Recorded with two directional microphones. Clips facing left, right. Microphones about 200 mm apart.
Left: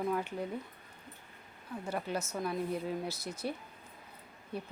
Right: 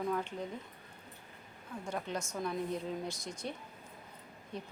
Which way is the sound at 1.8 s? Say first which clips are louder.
Left 2 dB; 5° left (ahead or behind).